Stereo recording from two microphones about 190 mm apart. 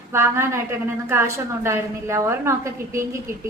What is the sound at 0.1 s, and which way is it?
A woman's voice, 15° right (ahead or behind).